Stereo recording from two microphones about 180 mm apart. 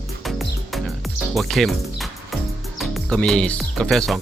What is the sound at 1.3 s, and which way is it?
Speech, centre (ahead or behind).